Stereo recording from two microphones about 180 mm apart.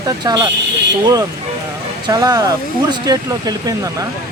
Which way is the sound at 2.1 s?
20° right (ahead or behind).